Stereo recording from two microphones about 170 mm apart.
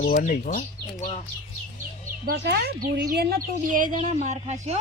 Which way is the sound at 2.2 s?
80° right.